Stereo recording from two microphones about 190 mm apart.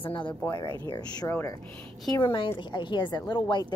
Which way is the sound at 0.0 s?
25° left (ahead or behind).